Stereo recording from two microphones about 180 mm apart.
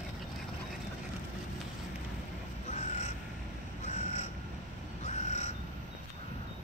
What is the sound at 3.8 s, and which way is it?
Crow, 40° left (ahead or behind).